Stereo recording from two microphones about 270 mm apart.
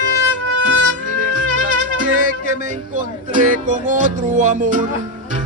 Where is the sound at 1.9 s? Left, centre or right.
Right.